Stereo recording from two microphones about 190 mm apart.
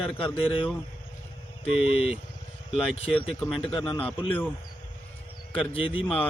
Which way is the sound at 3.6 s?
30° left (ahead or behind).